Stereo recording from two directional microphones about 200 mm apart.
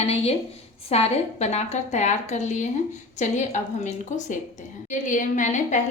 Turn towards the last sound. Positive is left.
turn(degrees=40)  # may be behind; listen again after turning